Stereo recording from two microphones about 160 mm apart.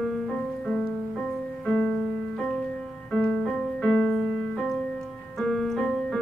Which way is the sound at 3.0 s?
5° left (ahead or behind).